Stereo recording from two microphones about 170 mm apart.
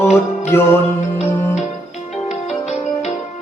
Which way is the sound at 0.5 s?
15° left (ahead or behind).